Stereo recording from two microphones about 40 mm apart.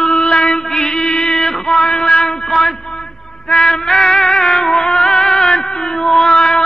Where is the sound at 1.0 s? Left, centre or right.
Left.